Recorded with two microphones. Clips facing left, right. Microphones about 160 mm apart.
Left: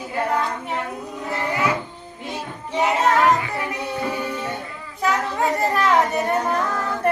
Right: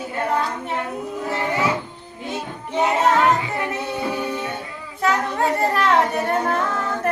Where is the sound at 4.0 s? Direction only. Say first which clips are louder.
Even; 5° right (ahead or behind).